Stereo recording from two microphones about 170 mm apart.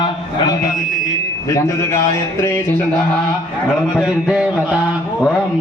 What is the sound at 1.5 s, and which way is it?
Speech, 15° left (ahead or behind).